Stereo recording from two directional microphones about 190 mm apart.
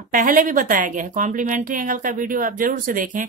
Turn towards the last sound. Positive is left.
turn(degrees=-45)  # may be behind; listen again after turning